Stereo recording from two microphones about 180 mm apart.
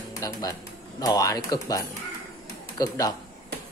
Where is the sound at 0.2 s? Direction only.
20° left (ahead or behind).